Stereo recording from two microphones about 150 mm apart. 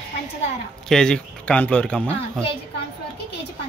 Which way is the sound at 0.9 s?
5° left (ahead or behind).